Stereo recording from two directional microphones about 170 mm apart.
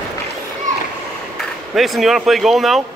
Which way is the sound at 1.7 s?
Centre (ahead or behind).